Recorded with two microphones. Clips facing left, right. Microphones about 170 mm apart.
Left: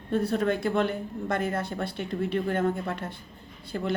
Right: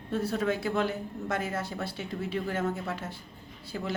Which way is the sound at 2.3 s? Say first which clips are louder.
Left 4 dB; 5° right (ahead or behind).